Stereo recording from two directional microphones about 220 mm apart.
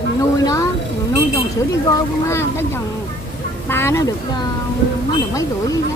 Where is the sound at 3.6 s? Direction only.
10° left (ahead or behind).